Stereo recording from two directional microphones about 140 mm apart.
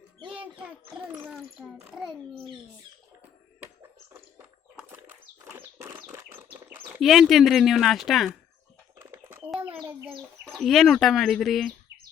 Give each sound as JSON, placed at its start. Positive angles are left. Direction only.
{"t": 1.2, "sound": "a sound", "side_deg": -5}
{"t": 1.8, "sound": "a child's voice", "side_deg": -5}
{"t": 4.8, "sound": "bird flight", "side_deg": -10}
{"t": 5.9, "sound": "bird", "side_deg": -25}
{"t": 7.0, "sound": "speech", "side_deg": 0}
{"t": 9.0, "sound": "a sound", "side_deg": -15}
{"t": 9.6, "sound": "bird", "side_deg": -10}
{"t": 10.4, "sound": "speech", "side_deg": 0}